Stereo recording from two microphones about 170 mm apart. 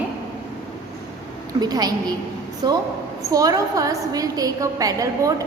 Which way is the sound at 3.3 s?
20° right (ahead or behind).